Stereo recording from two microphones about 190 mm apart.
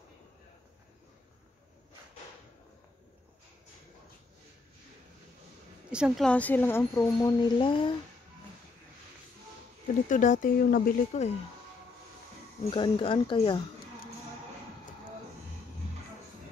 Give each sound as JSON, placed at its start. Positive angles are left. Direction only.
{"t": 5.9, "sound": "a woman's voice", "side_deg": -5}
{"t": 10.0, "sound": "speech", "side_deg": 40}
{"t": 12.7, "sound": "speech", "side_deg": 25}